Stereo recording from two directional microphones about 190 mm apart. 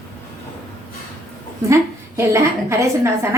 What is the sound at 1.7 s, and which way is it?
A woman's voice, 15° right (ahead or behind).